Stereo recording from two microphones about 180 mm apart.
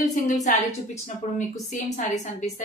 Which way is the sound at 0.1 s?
45° left (ahead or behind).